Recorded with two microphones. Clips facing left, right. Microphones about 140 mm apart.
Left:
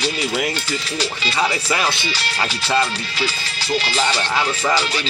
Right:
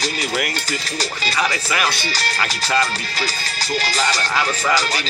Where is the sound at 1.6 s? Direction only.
25° left (ahead or behind).